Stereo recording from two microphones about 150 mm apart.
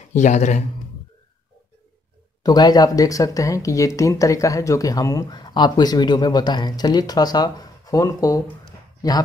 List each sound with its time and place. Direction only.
0.1 s speech: 55° left (ahead or behind)
2.4 s speech: 25° left (ahead or behind)